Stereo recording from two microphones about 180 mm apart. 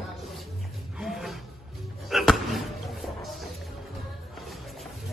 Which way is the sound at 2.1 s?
Centre (ahead or behind).